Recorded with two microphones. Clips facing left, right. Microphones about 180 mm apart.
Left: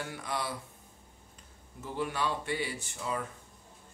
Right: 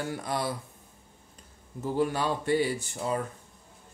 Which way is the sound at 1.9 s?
40° right (ahead or behind).